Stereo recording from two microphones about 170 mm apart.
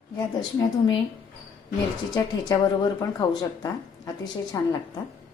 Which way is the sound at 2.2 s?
25° left (ahead or behind).